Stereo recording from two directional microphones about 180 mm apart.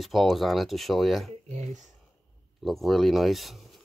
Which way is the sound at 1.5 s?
40° right (ahead or behind).